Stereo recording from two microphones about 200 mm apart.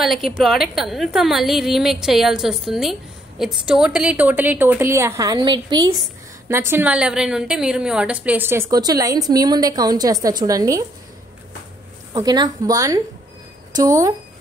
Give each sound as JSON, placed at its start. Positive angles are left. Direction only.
{"t": 0.0, "sound": "a woman's voice", "side_deg": 0}
{"t": 6.5, "sound": "a woman's voice", "side_deg": -10}
{"t": 12.1, "sound": "a woman's voice", "side_deg": -20}